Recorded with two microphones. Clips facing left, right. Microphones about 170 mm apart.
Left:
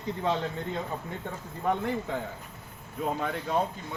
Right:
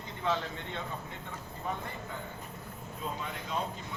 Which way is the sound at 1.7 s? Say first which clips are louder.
Left 9 dB; 70° left (ahead or behind).